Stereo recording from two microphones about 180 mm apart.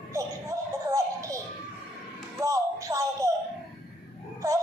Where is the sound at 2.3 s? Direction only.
20° right (ahead or behind).